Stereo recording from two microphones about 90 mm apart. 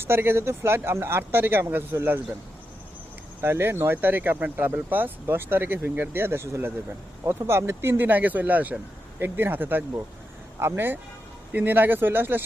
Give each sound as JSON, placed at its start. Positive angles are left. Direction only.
{"t": 0.0, "sound": "speech", "side_deg": -25}
{"t": 3.4, "sound": "speech", "side_deg": -25}